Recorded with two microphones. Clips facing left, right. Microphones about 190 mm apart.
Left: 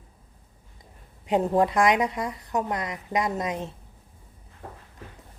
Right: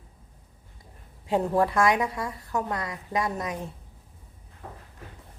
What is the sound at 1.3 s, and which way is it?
A woman's voice, 20° left (ahead or behind).